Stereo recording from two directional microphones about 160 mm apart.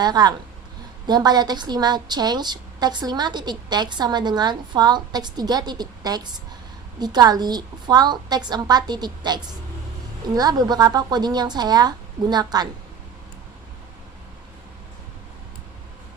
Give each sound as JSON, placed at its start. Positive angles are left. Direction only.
{"t": 0.0, "sound": "a woman's voice", "side_deg": -25}